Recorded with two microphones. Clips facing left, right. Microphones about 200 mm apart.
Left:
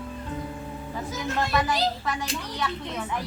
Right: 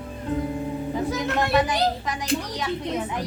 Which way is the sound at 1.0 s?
65° right (ahead or behind).